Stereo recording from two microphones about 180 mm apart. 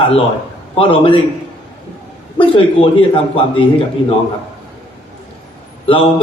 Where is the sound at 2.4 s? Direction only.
30° left (ahead or behind).